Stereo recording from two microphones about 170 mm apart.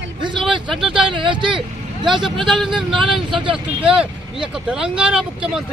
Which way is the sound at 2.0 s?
Centre (ahead or behind).